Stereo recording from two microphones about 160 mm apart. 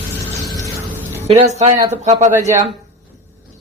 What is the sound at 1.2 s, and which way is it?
Speech, 45° right (ahead or behind).